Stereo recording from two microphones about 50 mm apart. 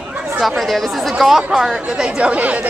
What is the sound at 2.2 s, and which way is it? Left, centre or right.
Speech, right.